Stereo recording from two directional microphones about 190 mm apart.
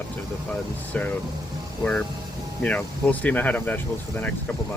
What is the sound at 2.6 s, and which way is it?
Speech, 5° left (ahead or behind).